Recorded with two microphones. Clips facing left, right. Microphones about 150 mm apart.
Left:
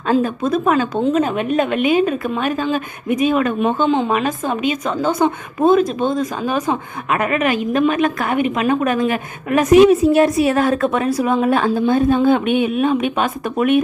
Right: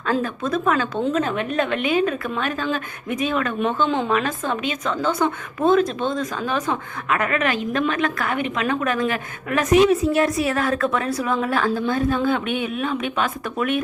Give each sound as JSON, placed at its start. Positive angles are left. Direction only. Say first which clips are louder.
{"t": 0.1, "sound": "a woman's voice", "louder": "left 6 dB", "side_deg": 20}